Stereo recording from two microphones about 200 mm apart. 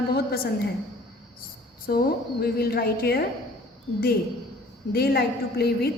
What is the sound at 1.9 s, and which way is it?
A woman's voice, 50° left (ahead or behind).